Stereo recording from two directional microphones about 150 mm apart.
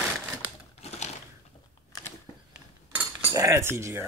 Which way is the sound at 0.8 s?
45° left (ahead or behind).